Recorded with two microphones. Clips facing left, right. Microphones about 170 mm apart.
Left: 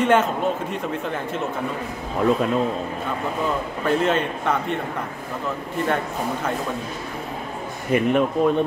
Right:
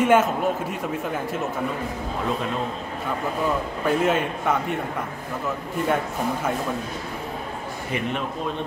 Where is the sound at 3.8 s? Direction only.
5° right (ahead or behind).